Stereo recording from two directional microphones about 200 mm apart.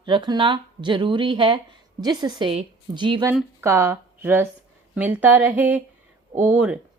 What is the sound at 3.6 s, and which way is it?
Speech, 10° right (ahead or behind).